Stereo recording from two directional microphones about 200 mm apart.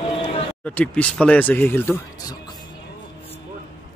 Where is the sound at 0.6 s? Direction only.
5° left (ahead or behind).